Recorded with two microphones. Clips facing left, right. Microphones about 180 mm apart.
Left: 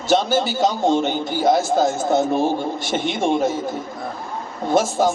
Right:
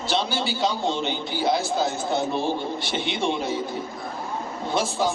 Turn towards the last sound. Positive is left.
turn(degrees=45)  # may be behind; listen again after turning